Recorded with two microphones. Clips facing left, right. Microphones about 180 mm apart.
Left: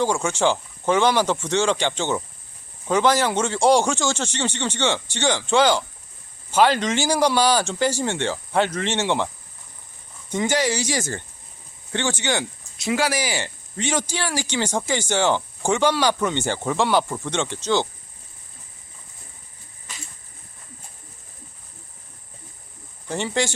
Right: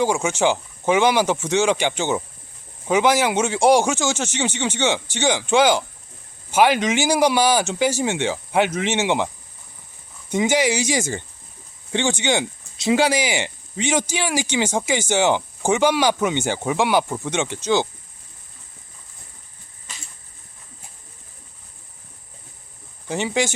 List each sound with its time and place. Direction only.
0.0 s speech: 10° right (ahead or behind)
10.3 s speech: 10° right (ahead or behind)
23.0 s speech: 10° right (ahead or behind)